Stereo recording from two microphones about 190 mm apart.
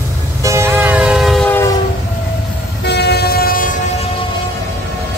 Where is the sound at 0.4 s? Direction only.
15° right (ahead or behind).